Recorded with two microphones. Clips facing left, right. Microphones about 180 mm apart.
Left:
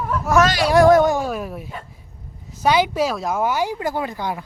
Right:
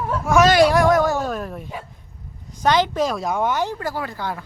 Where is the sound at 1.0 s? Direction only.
15° left (ahead or behind).